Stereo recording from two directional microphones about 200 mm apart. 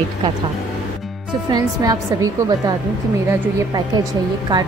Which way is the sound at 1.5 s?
20° right (ahead or behind).